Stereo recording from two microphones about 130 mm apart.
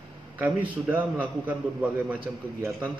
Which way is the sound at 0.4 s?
15° right (ahead or behind).